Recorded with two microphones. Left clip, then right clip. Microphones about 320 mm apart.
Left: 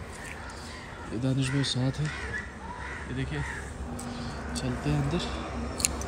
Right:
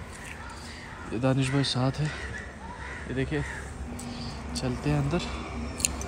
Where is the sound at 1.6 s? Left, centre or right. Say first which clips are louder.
Right 2 dB; centre.